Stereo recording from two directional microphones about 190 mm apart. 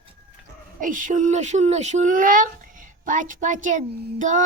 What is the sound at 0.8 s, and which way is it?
Speech, 45° right (ahead or behind).